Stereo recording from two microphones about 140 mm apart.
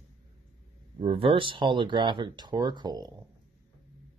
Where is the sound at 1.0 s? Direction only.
45° right (ahead or behind).